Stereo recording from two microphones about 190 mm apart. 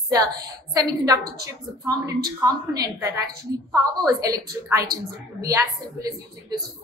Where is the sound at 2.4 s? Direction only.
20° right (ahead or behind).